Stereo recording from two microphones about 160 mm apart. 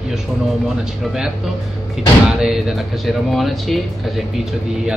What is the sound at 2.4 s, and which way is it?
Speech, centre (ahead or behind).